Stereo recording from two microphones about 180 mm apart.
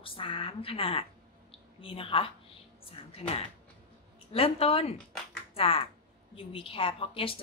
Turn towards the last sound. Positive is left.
turn(degrees=30)  # may be behind; listen again after turning